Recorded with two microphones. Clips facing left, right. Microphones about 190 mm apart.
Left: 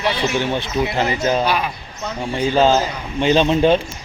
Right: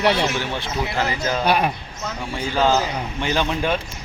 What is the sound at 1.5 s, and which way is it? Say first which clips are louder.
Speech: right 2 dB; 50° right (ahead or behind).